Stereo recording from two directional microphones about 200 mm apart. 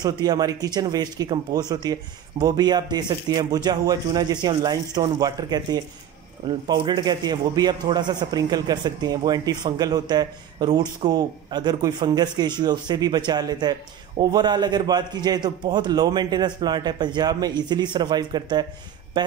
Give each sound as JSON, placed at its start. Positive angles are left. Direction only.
{"t": 0.0, "sound": "a man's voice", "side_deg": -20}